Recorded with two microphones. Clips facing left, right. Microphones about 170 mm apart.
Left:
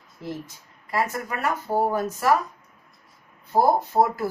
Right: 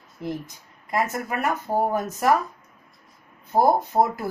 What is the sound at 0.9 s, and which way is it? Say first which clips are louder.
Speech: right 1 dB; 20° right (ahead or behind).